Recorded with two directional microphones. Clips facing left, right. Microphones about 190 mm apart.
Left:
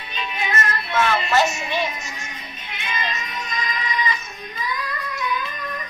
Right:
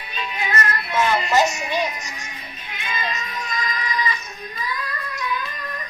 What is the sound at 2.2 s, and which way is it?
Music, 25° left (ahead or behind).